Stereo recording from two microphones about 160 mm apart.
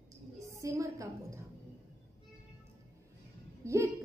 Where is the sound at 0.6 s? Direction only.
20° right (ahead or behind).